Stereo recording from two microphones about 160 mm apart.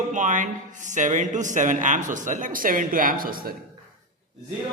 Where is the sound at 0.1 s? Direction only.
50° right (ahead or behind).